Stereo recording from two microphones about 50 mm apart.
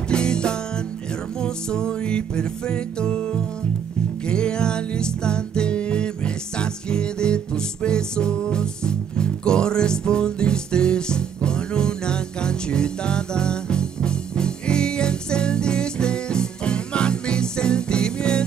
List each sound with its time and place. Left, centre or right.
0.1 s music: centre